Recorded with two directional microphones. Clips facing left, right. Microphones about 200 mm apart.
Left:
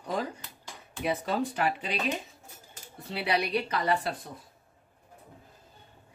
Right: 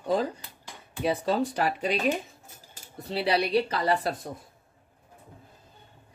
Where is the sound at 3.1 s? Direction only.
30° right (ahead or behind).